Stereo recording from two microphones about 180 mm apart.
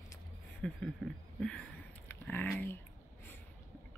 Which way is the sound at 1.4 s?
5° left (ahead or behind).